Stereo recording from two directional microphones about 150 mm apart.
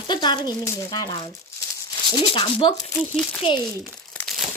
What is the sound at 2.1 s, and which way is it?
Speech, 35° left (ahead or behind).